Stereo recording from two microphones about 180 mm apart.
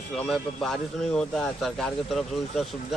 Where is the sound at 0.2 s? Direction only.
Centre (ahead or behind).